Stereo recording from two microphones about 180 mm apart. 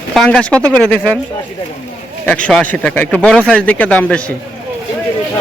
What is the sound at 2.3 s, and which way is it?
A man's voice, 5° left (ahead or behind).